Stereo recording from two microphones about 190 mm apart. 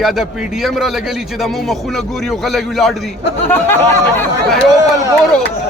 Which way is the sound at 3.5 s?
10° left (ahead or behind).